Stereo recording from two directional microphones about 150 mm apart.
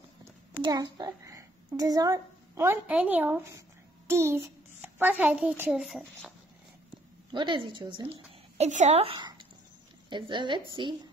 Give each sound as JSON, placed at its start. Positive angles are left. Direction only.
{"t": 0.6, "sound": "a child's voice", "side_deg": -30}
{"t": 7.2, "sound": "a woman's voice", "side_deg": -30}